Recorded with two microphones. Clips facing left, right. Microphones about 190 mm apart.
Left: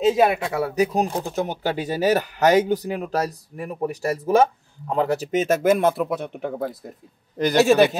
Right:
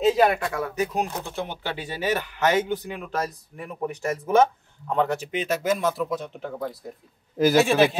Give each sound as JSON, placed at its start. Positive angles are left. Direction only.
{"t": 0.0, "sound": "speech", "side_deg": 0}
{"t": 0.4, "sound": "speech", "side_deg": 35}
{"t": 7.3, "sound": "speech", "side_deg": -5}